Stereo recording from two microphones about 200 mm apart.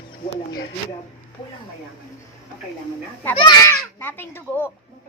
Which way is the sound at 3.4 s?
15° left (ahead or behind).